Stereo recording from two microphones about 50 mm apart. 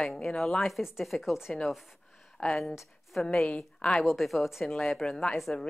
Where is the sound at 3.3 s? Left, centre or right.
Centre.